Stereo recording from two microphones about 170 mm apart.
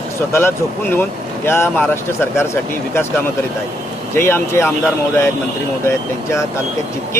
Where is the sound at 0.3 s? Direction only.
15° left (ahead or behind).